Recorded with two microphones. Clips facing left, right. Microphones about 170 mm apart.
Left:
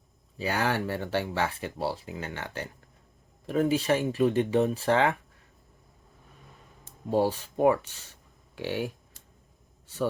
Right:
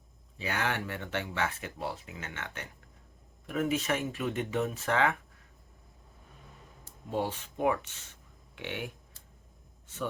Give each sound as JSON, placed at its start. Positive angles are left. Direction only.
{"t": 0.3, "sound": "speech", "side_deg": 35}
{"t": 7.1, "sound": "speech", "side_deg": 35}
{"t": 9.8, "sound": "a sound", "side_deg": 35}